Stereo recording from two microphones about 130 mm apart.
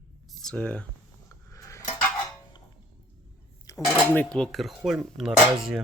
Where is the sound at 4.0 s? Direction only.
10° left (ahead or behind).